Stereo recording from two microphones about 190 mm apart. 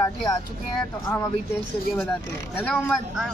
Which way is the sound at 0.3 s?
20° left (ahead or behind).